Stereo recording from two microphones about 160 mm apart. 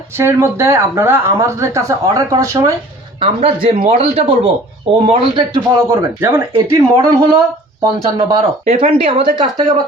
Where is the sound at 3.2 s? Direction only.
35° right (ahead or behind).